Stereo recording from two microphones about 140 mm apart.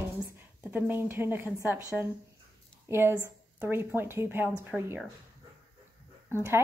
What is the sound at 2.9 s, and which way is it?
A woman's voice, 15° right (ahead or behind).